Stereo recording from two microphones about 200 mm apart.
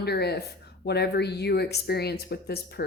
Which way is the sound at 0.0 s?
55° left (ahead or behind).